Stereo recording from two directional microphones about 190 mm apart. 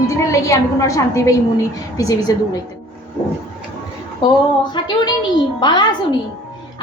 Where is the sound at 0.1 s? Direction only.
15° left (ahead or behind).